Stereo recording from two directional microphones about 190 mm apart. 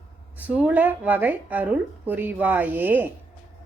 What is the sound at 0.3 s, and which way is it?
Speech, 10° right (ahead or behind).